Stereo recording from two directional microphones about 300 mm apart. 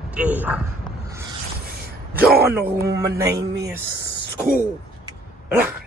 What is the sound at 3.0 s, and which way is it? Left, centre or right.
Speech, centre.